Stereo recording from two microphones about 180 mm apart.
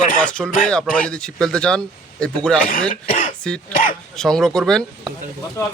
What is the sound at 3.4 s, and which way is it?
Speech, 5° left (ahead or behind).